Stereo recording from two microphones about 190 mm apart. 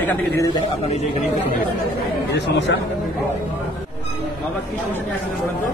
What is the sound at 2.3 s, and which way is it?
Speech, 65° left (ahead or behind).